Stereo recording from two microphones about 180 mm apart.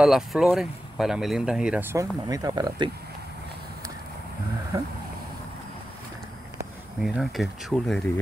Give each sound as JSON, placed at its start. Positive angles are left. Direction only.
{"t": 0.0, "sound": "speech", "side_deg": 0}
{"t": 7.0, "sound": "speech", "side_deg": 0}